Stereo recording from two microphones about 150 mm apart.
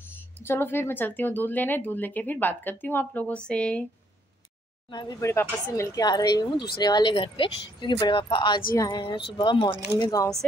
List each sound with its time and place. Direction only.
0.1 s speech: 15° left (ahead or behind)
4.9 s speech: 25° left (ahead or behind)